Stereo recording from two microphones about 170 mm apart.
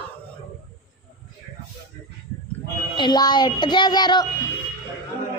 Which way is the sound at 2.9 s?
25° left (ahead or behind).